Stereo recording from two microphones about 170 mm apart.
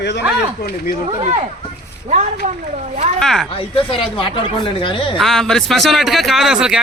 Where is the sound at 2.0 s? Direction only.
45° right (ahead or behind).